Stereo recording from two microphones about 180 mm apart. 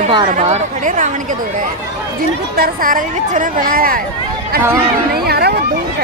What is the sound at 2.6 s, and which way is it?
A woman's voice, 50° right (ahead or behind).